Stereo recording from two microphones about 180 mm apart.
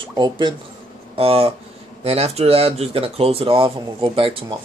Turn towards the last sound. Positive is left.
turn(degrees=-30)  # may be behind; listen again after turning